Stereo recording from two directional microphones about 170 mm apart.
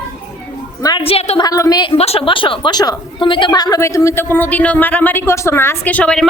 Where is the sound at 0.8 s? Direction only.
30° left (ahead or behind).